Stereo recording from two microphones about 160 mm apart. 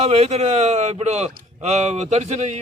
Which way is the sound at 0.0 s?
40° right (ahead or behind).